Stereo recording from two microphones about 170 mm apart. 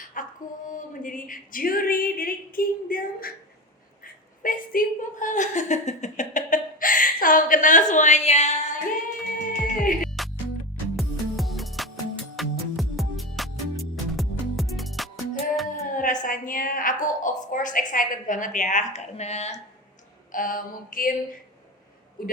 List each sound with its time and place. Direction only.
0.1 s a sound: 50° left (ahead or behind)
9.5 s music: 50° left (ahead or behind)
10.9 s music: centre (ahead or behind)
15.9 s a sound: 50° left (ahead or behind)
20.3 s mantra: 55° left (ahead or behind)
22.2 s speech: 55° left (ahead or behind)